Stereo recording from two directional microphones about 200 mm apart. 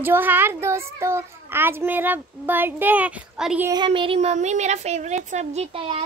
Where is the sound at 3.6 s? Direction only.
20° right (ahead or behind).